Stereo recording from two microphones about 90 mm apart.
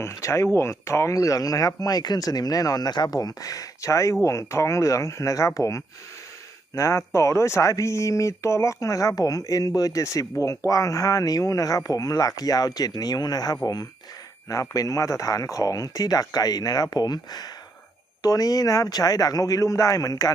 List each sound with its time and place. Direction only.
0.0 s speech: 30° left (ahead or behind)